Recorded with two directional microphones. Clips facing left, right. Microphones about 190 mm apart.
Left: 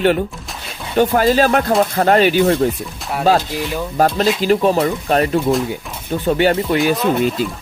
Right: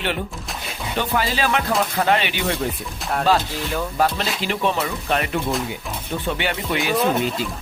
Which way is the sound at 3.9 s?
45° left (ahead or behind).